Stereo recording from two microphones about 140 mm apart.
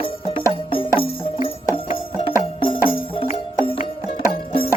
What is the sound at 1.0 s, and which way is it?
Music, 40° left (ahead or behind).